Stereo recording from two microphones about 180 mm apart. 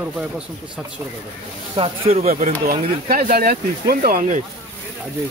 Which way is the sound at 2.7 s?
50° right (ahead or behind).